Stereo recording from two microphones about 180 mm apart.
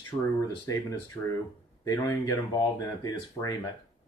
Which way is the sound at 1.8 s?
20° left (ahead or behind).